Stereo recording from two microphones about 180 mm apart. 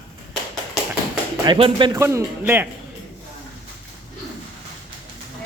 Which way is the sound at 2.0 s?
15° right (ahead or behind).